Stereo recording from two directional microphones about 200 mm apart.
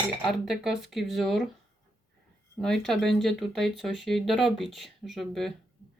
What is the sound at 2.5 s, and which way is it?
Speech, centre (ahead or behind).